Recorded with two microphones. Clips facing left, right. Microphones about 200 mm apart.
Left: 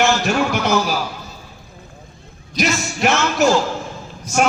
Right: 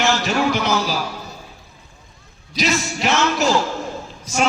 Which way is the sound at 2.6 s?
55° left (ahead or behind).